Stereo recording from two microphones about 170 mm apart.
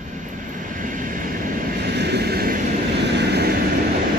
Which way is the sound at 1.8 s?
80° right.